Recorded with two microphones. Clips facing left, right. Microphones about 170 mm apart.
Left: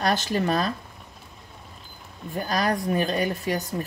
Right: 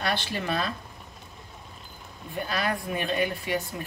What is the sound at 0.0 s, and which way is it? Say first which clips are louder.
Speech: left 6 dB; 45° left (ahead or behind).